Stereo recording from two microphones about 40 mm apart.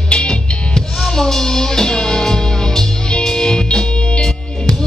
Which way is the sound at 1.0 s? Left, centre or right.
Centre.